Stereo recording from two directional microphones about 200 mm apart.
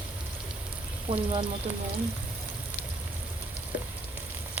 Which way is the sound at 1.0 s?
25° right (ahead or behind).